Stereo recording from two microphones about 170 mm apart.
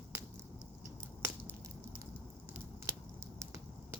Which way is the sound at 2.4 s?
15° right (ahead or behind).